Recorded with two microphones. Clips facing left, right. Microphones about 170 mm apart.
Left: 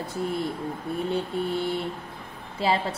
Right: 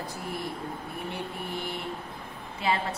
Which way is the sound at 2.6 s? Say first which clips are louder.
Left 4 dB; 30° left (ahead or behind).